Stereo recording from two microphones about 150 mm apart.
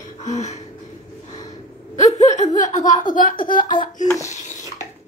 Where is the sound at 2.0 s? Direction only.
50° left (ahead or behind).